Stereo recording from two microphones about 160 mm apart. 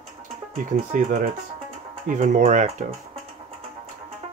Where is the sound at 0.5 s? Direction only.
45° right (ahead or behind).